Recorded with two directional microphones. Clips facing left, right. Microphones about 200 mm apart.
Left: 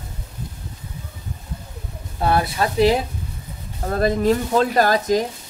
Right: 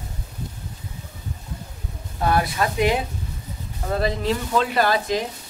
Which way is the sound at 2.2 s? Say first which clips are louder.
Left 1 dB; 30° left (ahead or behind).